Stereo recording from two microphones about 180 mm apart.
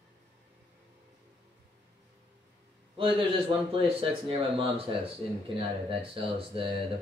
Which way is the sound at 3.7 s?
30° right (ahead or behind).